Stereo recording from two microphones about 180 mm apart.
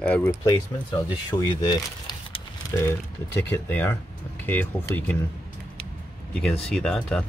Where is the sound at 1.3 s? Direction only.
25° left (ahead or behind).